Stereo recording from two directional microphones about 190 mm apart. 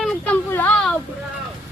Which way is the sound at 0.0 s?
5° left (ahead or behind).